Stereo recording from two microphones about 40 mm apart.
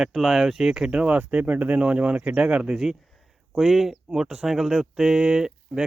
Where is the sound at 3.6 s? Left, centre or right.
Centre.